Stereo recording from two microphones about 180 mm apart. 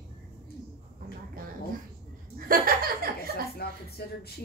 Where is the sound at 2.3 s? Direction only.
50° right (ahead or behind).